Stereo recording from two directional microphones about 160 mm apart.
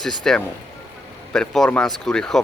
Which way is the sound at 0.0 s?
Centre (ahead or behind).